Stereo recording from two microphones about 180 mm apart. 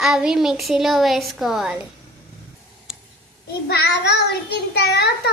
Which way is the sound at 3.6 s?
65° left (ahead or behind).